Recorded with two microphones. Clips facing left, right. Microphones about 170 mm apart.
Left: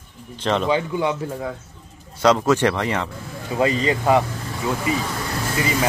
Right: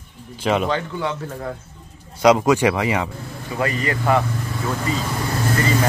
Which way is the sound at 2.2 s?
10° right (ahead or behind).